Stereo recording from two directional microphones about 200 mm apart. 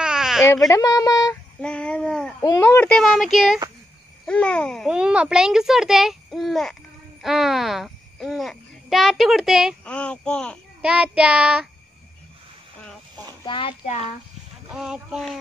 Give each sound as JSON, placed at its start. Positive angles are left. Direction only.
{"t": 0.0, "sound": "baby cry", "side_deg": -5}
{"t": 0.7, "sound": "speech", "side_deg": 15}
{"t": 1.6, "sound": "babbling", "side_deg": 5}
{"t": 2.4, "sound": "a child's voice", "side_deg": 15}
{"t": 13.5, "sound": "a child's voice", "side_deg": 25}
{"t": 14.7, "sound": "a child's voice", "side_deg": -5}